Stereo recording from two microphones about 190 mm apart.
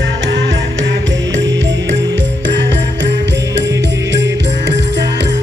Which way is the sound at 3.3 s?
15° right (ahead or behind).